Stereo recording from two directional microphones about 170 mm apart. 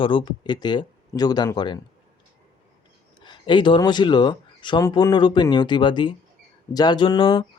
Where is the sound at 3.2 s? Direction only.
30° left (ahead or behind).